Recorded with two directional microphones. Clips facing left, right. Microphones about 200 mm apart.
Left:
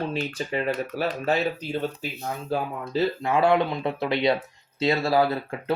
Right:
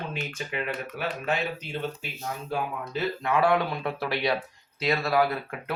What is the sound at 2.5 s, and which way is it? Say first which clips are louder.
Speech: left 4 dB; 30° left (ahead or behind).